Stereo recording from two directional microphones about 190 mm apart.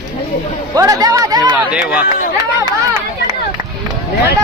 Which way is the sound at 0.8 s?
20° right (ahead or behind).